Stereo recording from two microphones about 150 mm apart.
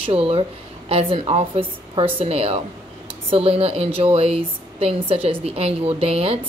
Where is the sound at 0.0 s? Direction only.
40° right (ahead or behind).